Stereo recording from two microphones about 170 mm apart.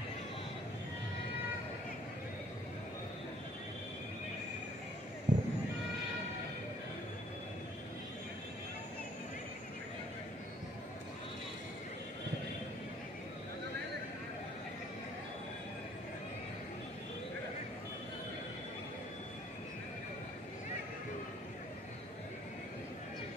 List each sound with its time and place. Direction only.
5.3 s neigh: 50° right (ahead or behind)